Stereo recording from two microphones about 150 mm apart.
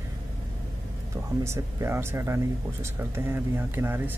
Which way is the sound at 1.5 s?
20° right (ahead or behind).